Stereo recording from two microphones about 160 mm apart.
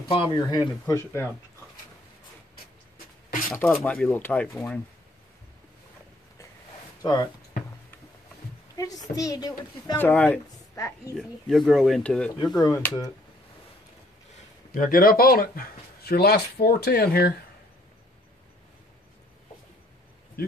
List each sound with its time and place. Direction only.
0.1 s speech: 30° left (ahead or behind)
3.4 s speech: 10° left (ahead or behind)
7.0 s speech: 25° left (ahead or behind)
8.7 s a sound: 25° left (ahead or behind)
9.1 s speech: 20° left (ahead or behind)
9.9 s speech: 10° left (ahead or behind)
12.5 s speech: 20° left (ahead or behind)
14.7 s speech: 65° left (ahead or behind)
20.4 s a sound: 75° left (ahead or behind)